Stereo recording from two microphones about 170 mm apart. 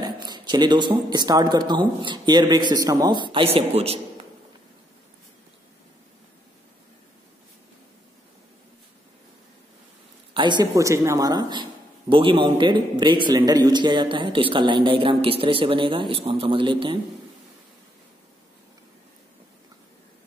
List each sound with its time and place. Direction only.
0.0 s speech: 25° right (ahead or behind)
10.3 s speech: 25° right (ahead or behind)